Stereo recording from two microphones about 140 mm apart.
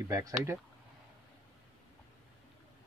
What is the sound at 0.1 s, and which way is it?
Speech, 20° right (ahead or behind).